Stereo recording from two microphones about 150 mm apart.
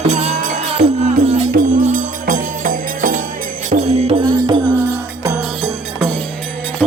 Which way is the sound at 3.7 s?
45° right (ahead or behind).